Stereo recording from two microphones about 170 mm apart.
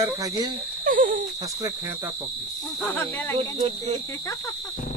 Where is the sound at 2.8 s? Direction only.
10° left (ahead or behind).